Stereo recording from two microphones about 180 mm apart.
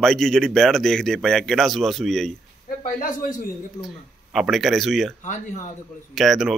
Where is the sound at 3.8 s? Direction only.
Centre (ahead or behind).